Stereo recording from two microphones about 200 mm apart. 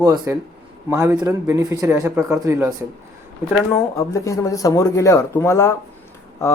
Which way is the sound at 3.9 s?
15° left (ahead or behind).